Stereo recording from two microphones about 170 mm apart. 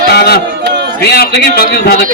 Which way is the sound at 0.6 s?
80° right.